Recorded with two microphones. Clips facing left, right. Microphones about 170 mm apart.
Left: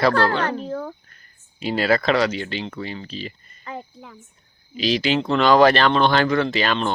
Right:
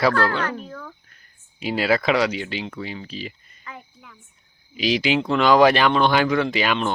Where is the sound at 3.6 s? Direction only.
30° left (ahead or behind).